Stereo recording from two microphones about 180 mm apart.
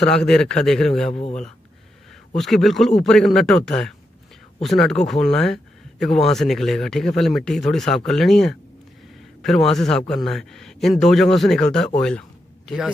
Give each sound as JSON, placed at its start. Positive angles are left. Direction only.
{"t": 0.0, "sound": "speech", "side_deg": 5}
{"t": 1.1, "sound": "speech", "side_deg": 35}
{"t": 2.3, "sound": "speech", "side_deg": 0}
{"t": 12.0, "sound": "a sound", "side_deg": 5}